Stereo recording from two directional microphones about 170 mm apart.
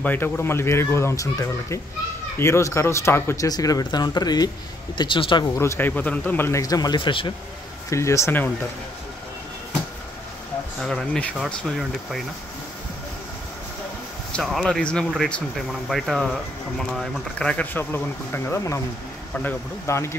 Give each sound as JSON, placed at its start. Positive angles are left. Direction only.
{"t": 0.0, "sound": "speech", "side_deg": 10}
{"t": 7.9, "sound": "speech", "side_deg": 15}
{"t": 10.8, "sound": "speech", "side_deg": 5}
{"t": 14.3, "sound": "speech", "side_deg": 0}